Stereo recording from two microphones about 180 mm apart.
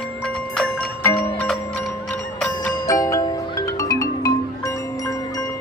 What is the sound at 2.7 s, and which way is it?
Music, 20° left (ahead or behind).